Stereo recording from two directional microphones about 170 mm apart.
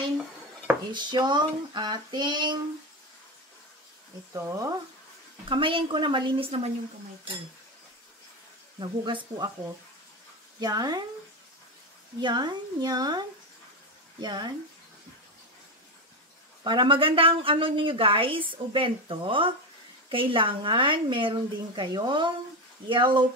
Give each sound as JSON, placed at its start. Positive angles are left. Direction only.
{"t": 0.9, "sound": "a woman's voice", "side_deg": -25}
{"t": 4.3, "sound": "a woman's voice", "side_deg": -20}
{"t": 5.4, "sound": "a woman's voice", "side_deg": -30}
{"t": 8.7, "sound": "a woman's voice", "side_deg": -30}
{"t": 10.6, "sound": "a woman's voice", "side_deg": -25}
{"t": 12.2, "sound": "a woman's voice", "side_deg": -25}
{"t": 14.2, "sound": "a woman's voice", "side_deg": -25}
{"t": 16.6, "sound": "a woman's voice", "side_deg": -30}